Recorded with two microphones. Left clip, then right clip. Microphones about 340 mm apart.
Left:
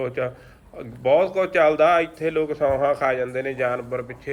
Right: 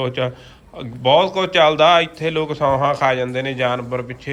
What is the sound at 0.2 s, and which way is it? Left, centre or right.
A man's voice, centre.